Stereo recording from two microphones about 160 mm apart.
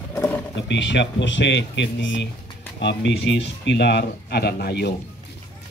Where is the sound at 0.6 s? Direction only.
90° left.